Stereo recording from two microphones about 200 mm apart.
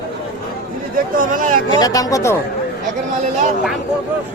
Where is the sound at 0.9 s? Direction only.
45° right (ahead or behind).